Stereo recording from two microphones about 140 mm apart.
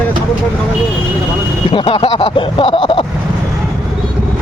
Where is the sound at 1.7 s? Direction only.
40° left (ahead or behind).